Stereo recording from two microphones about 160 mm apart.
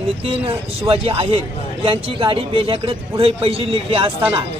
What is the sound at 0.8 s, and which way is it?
A man's voice, 35° right (ahead or behind).